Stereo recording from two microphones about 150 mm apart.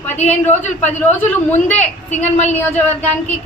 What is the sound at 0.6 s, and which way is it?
A woman's voice, 10° left (ahead or behind).